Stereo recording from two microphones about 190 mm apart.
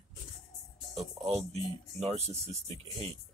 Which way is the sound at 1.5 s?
35° right (ahead or behind).